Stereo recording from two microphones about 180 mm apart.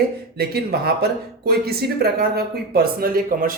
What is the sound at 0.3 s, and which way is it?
Speech, 60° right (ahead or behind).